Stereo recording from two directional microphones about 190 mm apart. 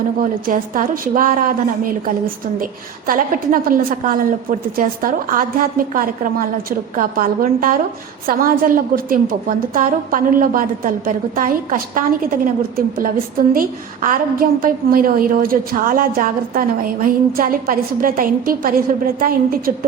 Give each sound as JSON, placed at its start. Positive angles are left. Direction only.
{"t": 0.2, "sound": "a woman's voice", "side_deg": -45}